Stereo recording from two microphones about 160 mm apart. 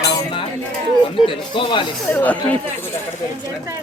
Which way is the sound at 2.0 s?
10° left (ahead or behind).